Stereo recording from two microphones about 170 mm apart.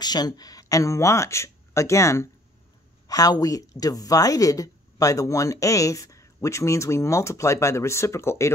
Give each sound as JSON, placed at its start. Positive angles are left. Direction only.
{"t": 0.0, "sound": "speech", "side_deg": 25}